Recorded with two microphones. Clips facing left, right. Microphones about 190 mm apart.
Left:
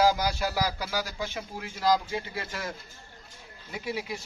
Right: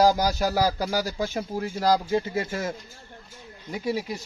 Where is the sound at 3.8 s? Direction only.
40° right (ahead or behind).